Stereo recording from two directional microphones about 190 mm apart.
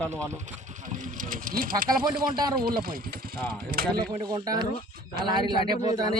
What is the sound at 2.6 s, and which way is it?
Speech, 50° right (ahead or behind).